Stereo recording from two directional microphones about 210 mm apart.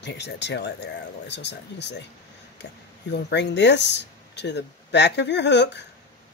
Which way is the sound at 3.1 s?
55° left (ahead or behind).